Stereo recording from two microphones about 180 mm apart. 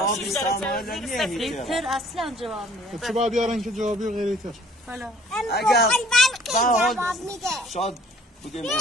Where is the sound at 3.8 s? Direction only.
45° right (ahead or behind).